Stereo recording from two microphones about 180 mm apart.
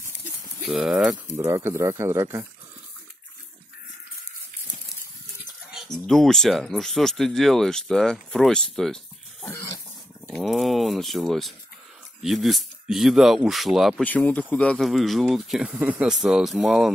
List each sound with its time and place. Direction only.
0.7 s speech: centre (ahead or behind)
1.3 s speech: 15° right (ahead or behind)
5.4 s speech: 5° right (ahead or behind)
9.5 s dog: 15° left (ahead or behind)
10.2 s speech: centre (ahead or behind)